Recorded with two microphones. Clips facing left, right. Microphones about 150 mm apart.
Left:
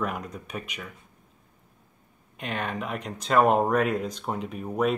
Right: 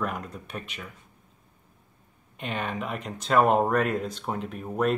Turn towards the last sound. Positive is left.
turn(degrees=0)  # may be behind; listen again after turning